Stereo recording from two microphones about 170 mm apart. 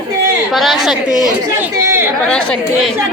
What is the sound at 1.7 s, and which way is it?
Chatter, 15° right (ahead or behind).